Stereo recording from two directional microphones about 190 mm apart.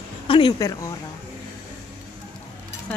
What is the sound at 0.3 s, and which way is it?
Speech, 25° left (ahead or behind).